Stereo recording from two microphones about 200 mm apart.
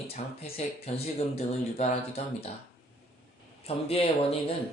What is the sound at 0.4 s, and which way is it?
Speech, 30° left (ahead or behind).